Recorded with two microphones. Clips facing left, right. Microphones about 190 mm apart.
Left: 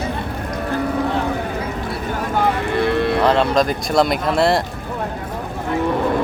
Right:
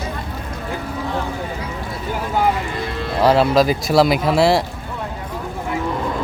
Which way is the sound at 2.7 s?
60° left (ahead or behind).